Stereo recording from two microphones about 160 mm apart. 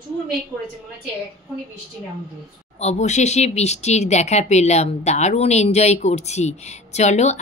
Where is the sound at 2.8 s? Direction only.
45° left (ahead or behind).